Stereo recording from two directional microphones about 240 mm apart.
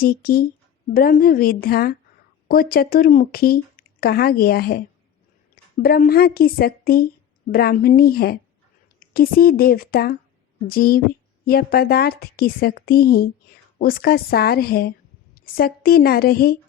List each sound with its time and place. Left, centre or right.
0.0 s a woman's voice: left